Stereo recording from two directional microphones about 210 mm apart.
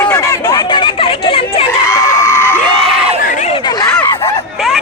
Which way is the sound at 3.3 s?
30° left (ahead or behind).